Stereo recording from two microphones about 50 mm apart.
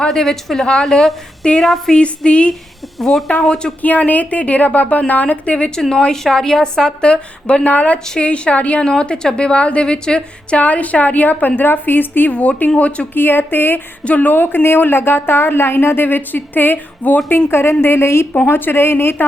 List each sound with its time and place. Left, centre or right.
0.0 s a woman's voice: centre
1.9 s a woman's voice: left
3.0 s a woman's voice: centre
3.8 s a woman's voice: left
12.3 s a woman's voice: left
13.1 s a woman's voice: left
14.0 s a woman's voice: left
17.2 s a woman's voice: left
18.4 s a woman's voice: left